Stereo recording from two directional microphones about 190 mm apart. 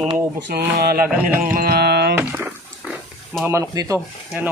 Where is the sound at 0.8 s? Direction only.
55° right (ahead or behind).